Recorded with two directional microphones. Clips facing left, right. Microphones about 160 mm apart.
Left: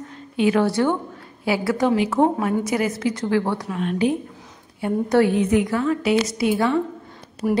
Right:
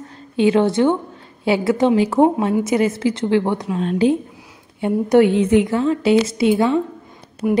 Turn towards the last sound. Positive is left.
turn(degrees=0)  # may be behind; listen again after turning